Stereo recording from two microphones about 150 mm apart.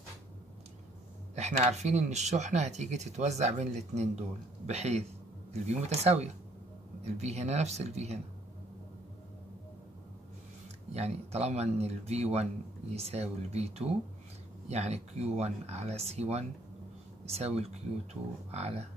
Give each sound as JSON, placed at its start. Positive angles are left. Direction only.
{"t": 1.3, "sound": "speech", "side_deg": -45}
{"t": 10.9, "sound": "speech", "side_deg": -45}